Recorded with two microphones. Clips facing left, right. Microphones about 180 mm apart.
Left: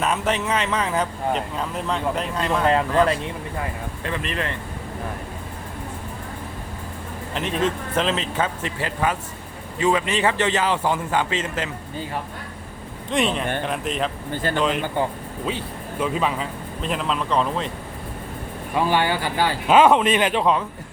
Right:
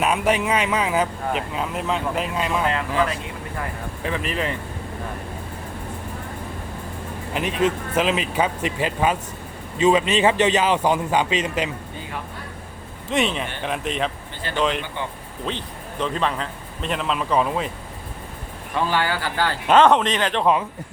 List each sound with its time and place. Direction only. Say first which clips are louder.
0.0 s speech: right 2 dB; 10° right (ahead or behind)
4.0 s speech: right 2 dB; 10° right (ahead or behind)
7.3 s speech: right 2 dB; 10° right (ahead or behind)
13.1 s a man's voice: left 1 dB; centre (ahead or behind)
14.4 s speech: left 1 dB; 45° left (ahead or behind)
15.4 s a man's voice: left 1 dB; 5° left (ahead or behind); by 17.7 s 10° right (ahead or behind)
18.8 s a man's voice: left 2 dB; 15° left (ahead or behind)
20.4 s speech: right 1 dB; 5° right (ahead or behind)